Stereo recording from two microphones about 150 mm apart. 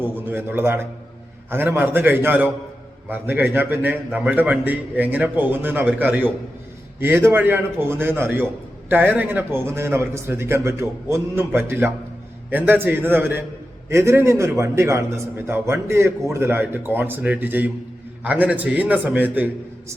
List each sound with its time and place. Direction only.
0.0 s a man's voice: 15° right (ahead or behind)